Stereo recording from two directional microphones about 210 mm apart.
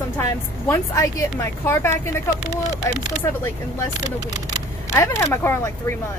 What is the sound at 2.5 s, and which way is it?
Speech, 20° right (ahead or behind).